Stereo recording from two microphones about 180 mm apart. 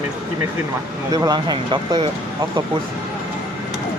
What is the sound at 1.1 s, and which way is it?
Speech, 25° right (ahead or behind).